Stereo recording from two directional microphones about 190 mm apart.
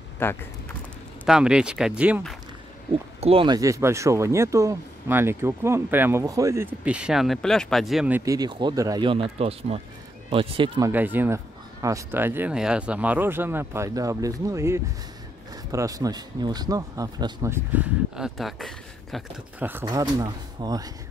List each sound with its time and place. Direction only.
0.2 s speech: 10° left (ahead or behind)
1.2 s speech: 5° right (ahead or behind)
3.2 s speech: 30° right (ahead or behind); by 8.2 s centre (ahead or behind)
8.3 s speech: 20° right (ahead or behind)
10.8 s speech: 10° right (ahead or behind)
19.6 s speech: 15° right (ahead or behind)